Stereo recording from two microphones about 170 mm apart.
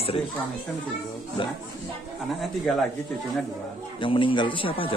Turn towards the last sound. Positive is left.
turn(degrees=30)  # may be behind; listen again after turning